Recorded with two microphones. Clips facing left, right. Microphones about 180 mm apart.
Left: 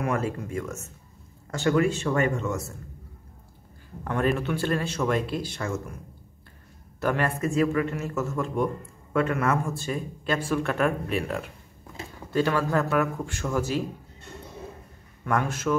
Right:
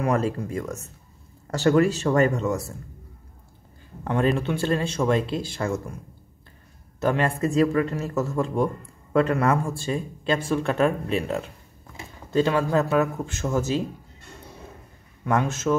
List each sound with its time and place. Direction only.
0.0 s speech: 35° right (ahead or behind)
4.0 s speech: 25° right (ahead or behind)
7.0 s speech: 25° right (ahead or behind)
15.2 s speech: 25° right (ahead or behind)